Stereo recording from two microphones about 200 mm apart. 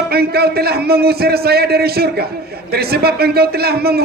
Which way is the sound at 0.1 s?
50° right (ahead or behind).